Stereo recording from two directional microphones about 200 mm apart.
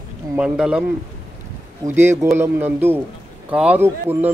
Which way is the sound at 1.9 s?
10° right (ahead or behind).